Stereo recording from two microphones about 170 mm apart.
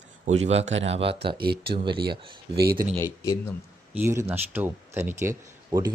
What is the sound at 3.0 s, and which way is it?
Speech, 15° left (ahead or behind).